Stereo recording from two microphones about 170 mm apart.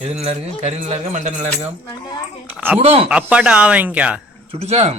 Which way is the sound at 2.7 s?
35° right (ahead or behind).